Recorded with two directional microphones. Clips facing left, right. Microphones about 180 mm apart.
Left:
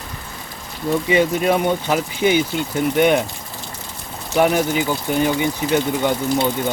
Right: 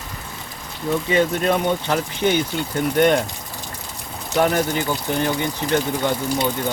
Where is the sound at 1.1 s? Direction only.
10° left (ahead or behind).